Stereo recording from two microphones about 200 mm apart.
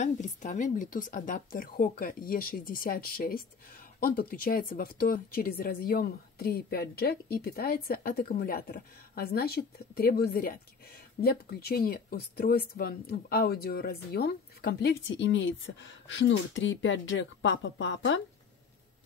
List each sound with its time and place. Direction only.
0.0 s speech: 40° left (ahead or behind); by 18.2 s 65° left (ahead or behind)